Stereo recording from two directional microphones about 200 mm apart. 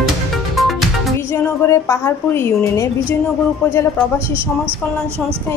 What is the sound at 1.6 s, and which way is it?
A woman's voice, 15° left (ahead or behind).